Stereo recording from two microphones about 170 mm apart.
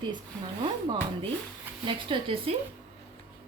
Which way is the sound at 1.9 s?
30° right (ahead or behind).